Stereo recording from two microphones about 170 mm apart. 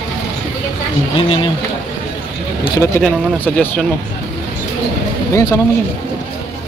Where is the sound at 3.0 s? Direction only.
10° left (ahead or behind).